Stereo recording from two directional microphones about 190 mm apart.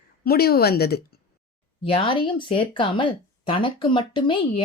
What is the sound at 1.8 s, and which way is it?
Speech, 30° left (ahead or behind).